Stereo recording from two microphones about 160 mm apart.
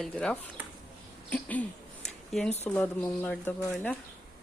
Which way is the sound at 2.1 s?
Centre (ahead or behind).